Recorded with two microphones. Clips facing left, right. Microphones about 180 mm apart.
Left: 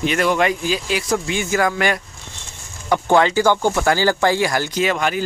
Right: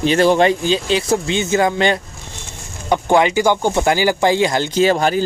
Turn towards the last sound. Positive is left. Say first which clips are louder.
# right 5 dB
turn(degrees=-35)  # may be behind; listen again after turning